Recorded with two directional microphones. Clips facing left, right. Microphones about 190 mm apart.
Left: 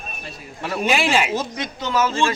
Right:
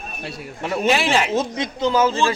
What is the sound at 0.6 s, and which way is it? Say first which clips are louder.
Speech: right 2 dB; 25° right (ahead or behind).